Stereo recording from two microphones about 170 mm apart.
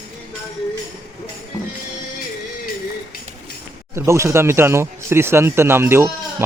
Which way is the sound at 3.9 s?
15° right (ahead or behind).